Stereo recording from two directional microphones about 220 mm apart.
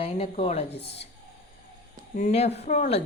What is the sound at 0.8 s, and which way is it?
Speech, 50° left (ahead or behind).